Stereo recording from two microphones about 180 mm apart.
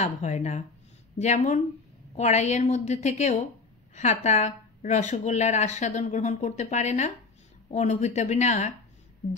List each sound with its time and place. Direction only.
0.0 s speech: 40° left (ahead or behind)